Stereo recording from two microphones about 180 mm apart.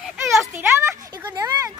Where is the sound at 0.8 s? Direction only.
15° right (ahead or behind).